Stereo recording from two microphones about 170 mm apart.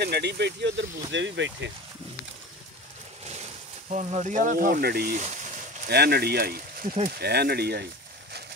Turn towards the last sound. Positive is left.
turn(degrees=-70)  # may be behind; listen again after turning